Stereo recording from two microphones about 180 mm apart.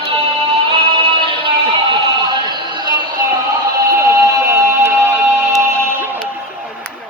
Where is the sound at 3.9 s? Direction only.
15° right (ahead or behind).